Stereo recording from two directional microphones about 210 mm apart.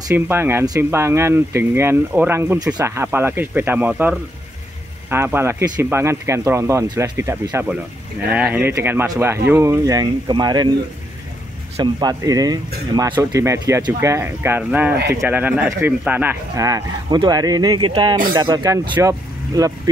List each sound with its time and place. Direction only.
0.1 s speech: 10° right (ahead or behind)
11.7 s speech: 20° right (ahead or behind)